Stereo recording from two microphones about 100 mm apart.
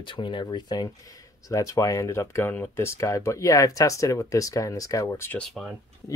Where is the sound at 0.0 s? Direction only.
55° left (ahead or behind); by 5.4 s 25° left (ahead or behind).